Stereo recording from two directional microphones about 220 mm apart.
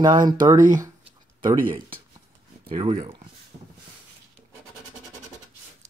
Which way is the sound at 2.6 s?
25° right (ahead or behind).